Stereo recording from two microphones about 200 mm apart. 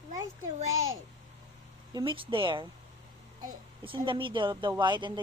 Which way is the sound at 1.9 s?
20° right (ahead or behind).